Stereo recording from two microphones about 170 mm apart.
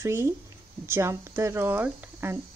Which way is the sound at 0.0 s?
15° right (ahead or behind).